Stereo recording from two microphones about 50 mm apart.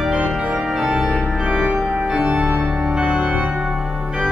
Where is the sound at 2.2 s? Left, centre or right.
Right.